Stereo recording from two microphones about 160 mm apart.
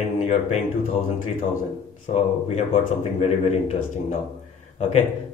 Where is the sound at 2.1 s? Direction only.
40° left (ahead or behind).